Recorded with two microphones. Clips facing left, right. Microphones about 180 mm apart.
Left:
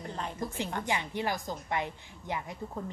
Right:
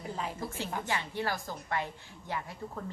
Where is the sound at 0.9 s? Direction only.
15° left (ahead or behind).